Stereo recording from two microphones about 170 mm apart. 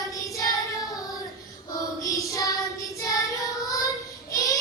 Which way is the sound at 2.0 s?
20° left (ahead or behind).